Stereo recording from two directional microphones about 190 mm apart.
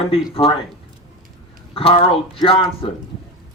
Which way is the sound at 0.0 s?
30° left (ahead or behind).